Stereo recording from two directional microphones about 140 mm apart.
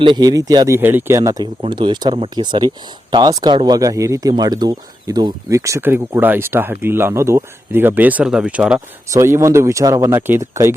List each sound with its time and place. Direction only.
0.0 s speech: 30° right (ahead or behind)
0.8 s speech: 15° right (ahead or behind)
9.0 s speech: 20° right (ahead or behind)